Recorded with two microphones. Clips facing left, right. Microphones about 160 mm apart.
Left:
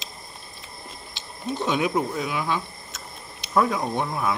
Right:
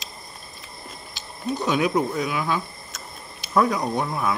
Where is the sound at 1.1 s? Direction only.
25° left (ahead or behind).